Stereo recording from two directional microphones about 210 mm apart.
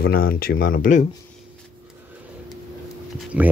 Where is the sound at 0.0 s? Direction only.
45° left (ahead or behind).